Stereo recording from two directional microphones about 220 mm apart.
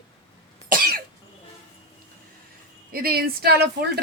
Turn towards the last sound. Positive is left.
turn(degrees=-45)  # may be behind; listen again after turning